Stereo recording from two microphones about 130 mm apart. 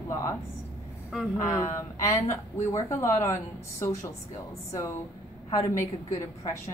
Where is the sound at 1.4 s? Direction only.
25° left (ahead or behind).